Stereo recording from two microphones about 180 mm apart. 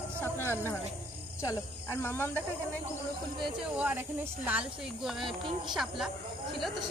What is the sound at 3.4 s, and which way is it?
Speech, 5° right (ahead or behind).